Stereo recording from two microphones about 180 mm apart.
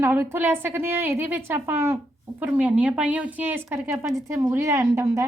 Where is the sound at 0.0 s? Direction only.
15° right (ahead or behind).